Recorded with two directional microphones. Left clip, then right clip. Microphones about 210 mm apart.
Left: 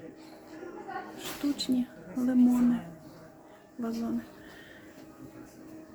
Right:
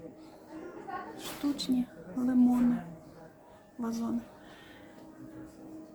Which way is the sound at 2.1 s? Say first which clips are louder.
Left 1 dB; 10° left (ahead or behind).